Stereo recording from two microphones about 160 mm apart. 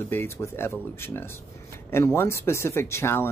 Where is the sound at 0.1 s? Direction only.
15° left (ahead or behind).